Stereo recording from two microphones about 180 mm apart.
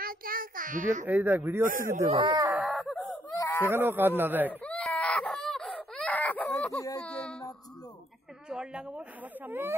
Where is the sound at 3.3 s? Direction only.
20° left (ahead or behind).